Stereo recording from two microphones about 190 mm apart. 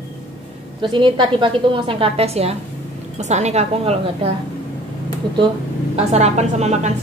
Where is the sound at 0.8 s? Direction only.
25° right (ahead or behind).